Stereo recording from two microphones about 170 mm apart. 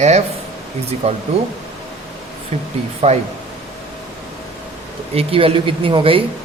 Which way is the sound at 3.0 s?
35° right (ahead or behind).